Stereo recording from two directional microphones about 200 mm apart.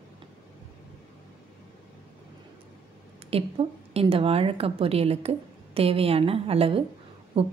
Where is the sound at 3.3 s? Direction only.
30° right (ahead or behind).